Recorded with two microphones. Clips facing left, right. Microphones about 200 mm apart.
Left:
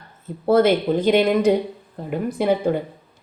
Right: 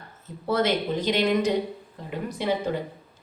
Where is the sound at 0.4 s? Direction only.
55° left (ahead or behind).